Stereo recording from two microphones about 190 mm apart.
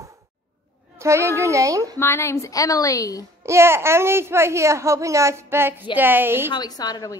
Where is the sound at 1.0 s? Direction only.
15° right (ahead or behind).